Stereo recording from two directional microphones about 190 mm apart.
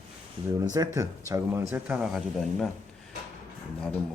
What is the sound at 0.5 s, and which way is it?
Speech, 20° right (ahead or behind).